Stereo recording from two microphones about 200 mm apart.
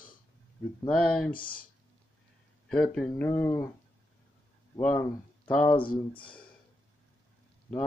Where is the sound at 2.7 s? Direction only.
5° left (ahead or behind).